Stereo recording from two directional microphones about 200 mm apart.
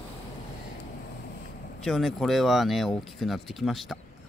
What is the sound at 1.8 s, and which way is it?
Speech, centre (ahead or behind).